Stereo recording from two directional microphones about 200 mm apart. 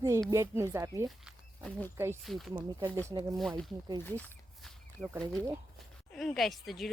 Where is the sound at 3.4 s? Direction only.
Centre (ahead or behind).